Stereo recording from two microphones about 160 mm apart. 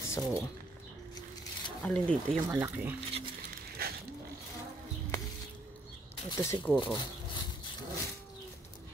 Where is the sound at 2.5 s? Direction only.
15° right (ahead or behind).